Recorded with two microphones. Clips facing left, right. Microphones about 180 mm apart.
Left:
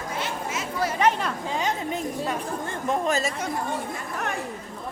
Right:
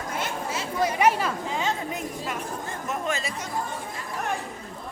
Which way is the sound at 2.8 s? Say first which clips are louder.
Left 6 dB; 35° left (ahead or behind).